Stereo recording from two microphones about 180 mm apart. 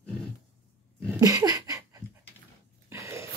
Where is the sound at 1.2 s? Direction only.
20° right (ahead or behind).